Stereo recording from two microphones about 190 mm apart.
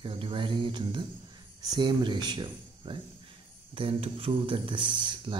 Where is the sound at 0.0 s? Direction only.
25° right (ahead or behind).